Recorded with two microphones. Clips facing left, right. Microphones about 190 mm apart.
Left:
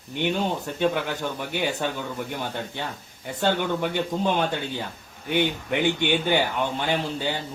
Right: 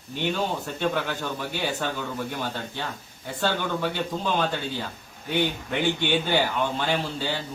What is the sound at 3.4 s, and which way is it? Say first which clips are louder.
A man's voice: left 2 dB; 15° left (ahead or behind).